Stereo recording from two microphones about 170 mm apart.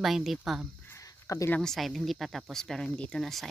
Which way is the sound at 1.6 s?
Centre (ahead or behind).